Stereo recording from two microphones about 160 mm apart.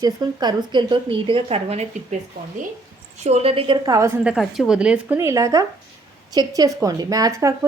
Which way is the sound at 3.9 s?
20° right (ahead or behind).